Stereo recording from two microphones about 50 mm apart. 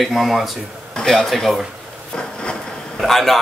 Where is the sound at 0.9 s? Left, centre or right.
Centre.